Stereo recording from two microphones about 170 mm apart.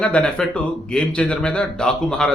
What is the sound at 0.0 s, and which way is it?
Speech, 5° left (ahead or behind).